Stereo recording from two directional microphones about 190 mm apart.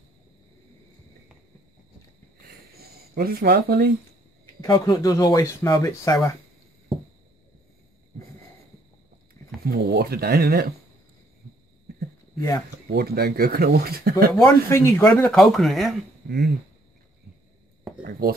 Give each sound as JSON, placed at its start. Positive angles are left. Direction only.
{"t": 2.4, "sound": "a sound", "side_deg": -55}
{"t": 4.6, "sound": "speech", "side_deg": 20}
{"t": 9.7, "sound": "speech", "side_deg": -55}
{"t": 12.4, "sound": "speech", "side_deg": 20}
{"t": 12.9, "sound": "speech", "side_deg": -55}
{"t": 14.4, "sound": "speech", "side_deg": 15}
{"t": 16.3, "sound": "speech", "side_deg": -60}